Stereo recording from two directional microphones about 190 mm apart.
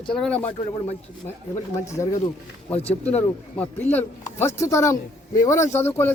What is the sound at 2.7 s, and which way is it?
Speech, 30° left (ahead or behind).